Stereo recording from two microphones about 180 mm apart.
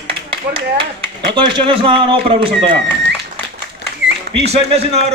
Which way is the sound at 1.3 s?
25° right (ahead or behind).